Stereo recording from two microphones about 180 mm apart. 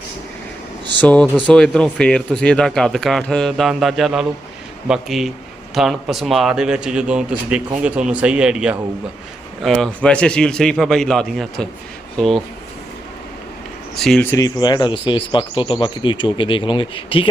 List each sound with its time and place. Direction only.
1.0 s speech: 5° left (ahead or behind)
13.9 s speech: centre (ahead or behind); by 17.2 s 30° left (ahead or behind)